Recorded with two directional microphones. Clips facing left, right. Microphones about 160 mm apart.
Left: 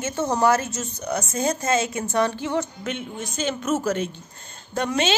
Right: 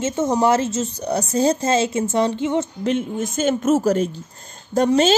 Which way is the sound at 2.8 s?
45° right (ahead or behind).